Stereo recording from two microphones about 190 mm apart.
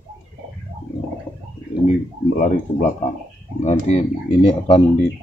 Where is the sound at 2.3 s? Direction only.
40° left (ahead or behind).